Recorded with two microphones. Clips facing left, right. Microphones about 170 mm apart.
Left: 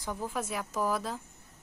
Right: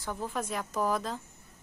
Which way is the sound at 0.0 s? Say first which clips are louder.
Even; 10° left (ahead or behind).